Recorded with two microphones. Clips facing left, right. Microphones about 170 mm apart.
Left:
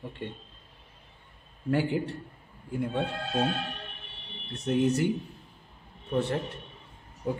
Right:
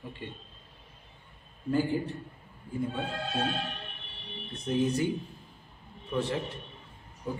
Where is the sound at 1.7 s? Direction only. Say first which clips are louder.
Left 1 dB; 90° left.